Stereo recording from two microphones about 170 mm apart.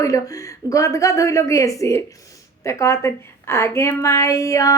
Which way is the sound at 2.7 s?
15° left (ahead or behind).